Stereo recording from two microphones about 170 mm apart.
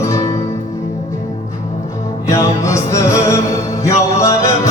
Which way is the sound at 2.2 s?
20° left (ahead or behind).